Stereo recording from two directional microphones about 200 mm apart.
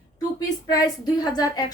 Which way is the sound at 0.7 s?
20° left (ahead or behind).